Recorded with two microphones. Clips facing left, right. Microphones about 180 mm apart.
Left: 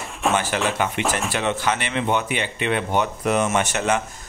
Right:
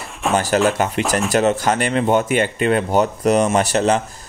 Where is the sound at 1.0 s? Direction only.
40° right (ahead or behind).